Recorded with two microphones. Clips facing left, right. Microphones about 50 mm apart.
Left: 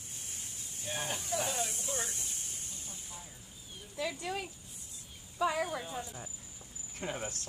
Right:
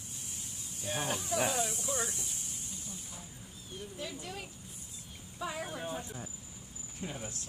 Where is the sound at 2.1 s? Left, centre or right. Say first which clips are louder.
Even; left.